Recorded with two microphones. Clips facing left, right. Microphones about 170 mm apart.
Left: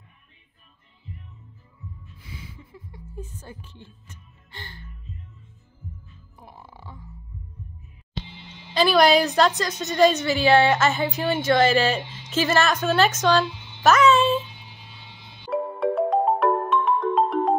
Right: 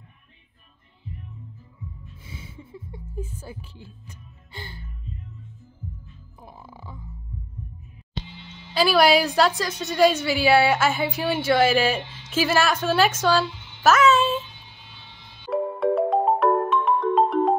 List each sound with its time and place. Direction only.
2.5 s a sound: 25° right (ahead or behind)
3.2 s music: 10° right (ahead or behind)
6.5 s music: centre (ahead or behind)
8.7 s a woman's voice: 5° right (ahead or behind)
15.5 s music: centre (ahead or behind)